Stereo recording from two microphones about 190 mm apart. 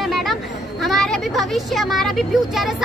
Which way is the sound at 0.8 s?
Centre (ahead or behind).